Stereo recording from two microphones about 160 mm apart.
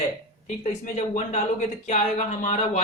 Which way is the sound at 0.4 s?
45° left (ahead or behind).